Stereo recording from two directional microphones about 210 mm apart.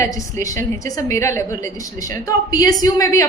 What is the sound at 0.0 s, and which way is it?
A woman's voice, 15° left (ahead or behind).